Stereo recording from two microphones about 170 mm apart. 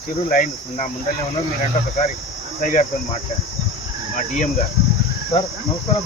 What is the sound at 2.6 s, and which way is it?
Speech, 50° left (ahead or behind).